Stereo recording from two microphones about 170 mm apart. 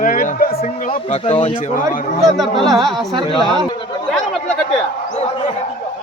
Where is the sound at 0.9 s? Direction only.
35° left (ahead or behind).